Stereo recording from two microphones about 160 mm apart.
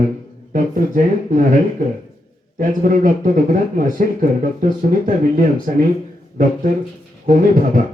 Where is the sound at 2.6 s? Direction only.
60° right (ahead or behind).